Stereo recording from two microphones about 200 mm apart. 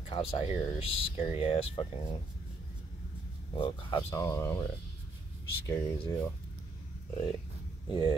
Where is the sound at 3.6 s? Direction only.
25° left (ahead or behind).